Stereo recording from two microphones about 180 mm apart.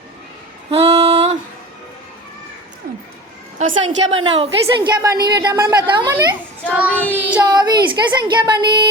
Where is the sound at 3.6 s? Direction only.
40° right (ahead or behind).